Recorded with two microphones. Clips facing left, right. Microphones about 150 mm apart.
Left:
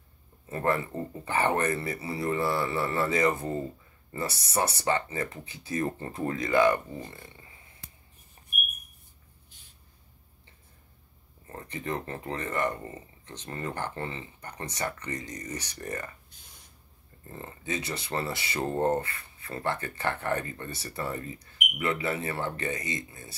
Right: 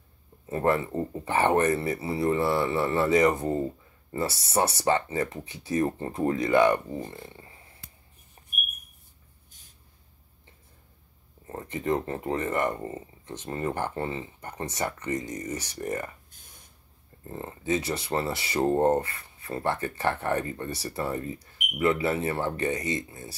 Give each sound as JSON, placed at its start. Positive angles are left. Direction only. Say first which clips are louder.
{"t": 0.5, "sound": "speech", "louder": "right 3 dB", "side_deg": -20}
{"t": 11.4, "sound": "speech", "louder": "right 6 dB", "side_deg": -20}
{"t": 14.4, "sound": "speech", "louder": "right 2 dB", "side_deg": -25}
{"t": 17.3, "sound": "speech", "louder": "right 7 dB", "side_deg": -25}